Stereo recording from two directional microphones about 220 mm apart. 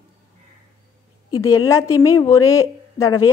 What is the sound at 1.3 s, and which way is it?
A woman's voice, 15° left (ahead or behind).